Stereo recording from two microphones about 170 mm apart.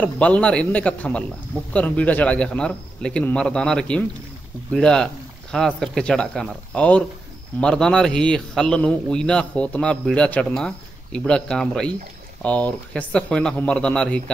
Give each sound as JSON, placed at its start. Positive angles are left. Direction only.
{"t": 0.0, "sound": "a man's voice", "side_deg": 5}